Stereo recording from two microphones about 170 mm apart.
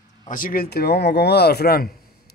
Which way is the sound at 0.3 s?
55° left (ahead or behind).